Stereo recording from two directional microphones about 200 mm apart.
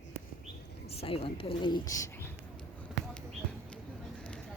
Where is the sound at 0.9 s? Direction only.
30° left (ahead or behind).